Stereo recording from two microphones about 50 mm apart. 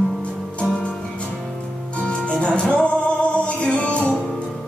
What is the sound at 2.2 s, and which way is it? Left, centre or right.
Music, left.